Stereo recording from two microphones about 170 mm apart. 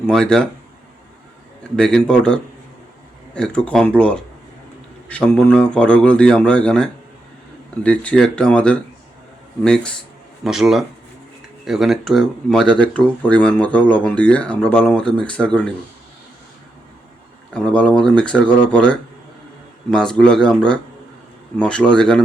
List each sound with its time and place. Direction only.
0.1 s speech: 5° left (ahead or behind)
1.7 s speech: 5° left (ahead or behind)
17.5 s speech: 5° left (ahead or behind)